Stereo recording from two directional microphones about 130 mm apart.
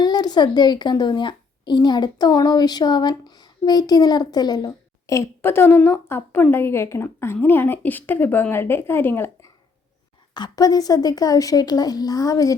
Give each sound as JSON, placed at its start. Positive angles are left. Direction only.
{"t": 0.0, "sound": "a woman's voice", "side_deg": 30}
{"t": 10.3, "sound": "speech", "side_deg": 30}